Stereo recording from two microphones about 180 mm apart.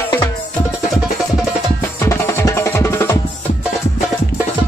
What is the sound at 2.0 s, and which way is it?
Music, 15° left (ahead or behind).